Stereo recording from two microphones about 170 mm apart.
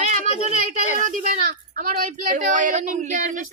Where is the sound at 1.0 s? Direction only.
50° right (ahead or behind).